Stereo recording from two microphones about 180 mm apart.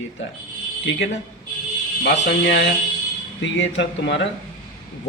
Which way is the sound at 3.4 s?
90° left.